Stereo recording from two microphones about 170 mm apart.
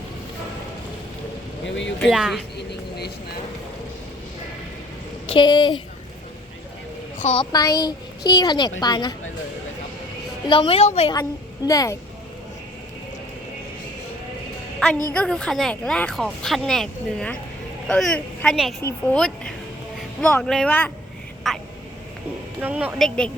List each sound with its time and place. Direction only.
1.6 s speech: 90° left
2.0 s speech: centre (ahead or behind)
5.2 s speech: 30° left (ahead or behind)
7.2 s speech: 40° left (ahead or behind)
7.5 s a woman's voice: 20° left (ahead or behind)
10.5 s a woman's voice: 30° left (ahead or behind)
11.1 s a woman's voice: 20° left (ahead or behind)
15.1 s a woman's voice: 5° left (ahead or behind)
22.6 s a woman's voice: 5° right (ahead or behind)
23.0 s speech: 5° left (ahead or behind)